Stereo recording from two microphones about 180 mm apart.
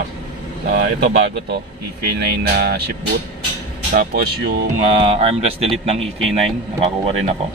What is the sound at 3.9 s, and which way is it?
Speech, 50° right (ahead or behind).